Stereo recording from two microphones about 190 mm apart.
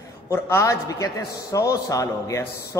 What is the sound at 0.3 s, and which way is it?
A man's voice, 15° left (ahead or behind).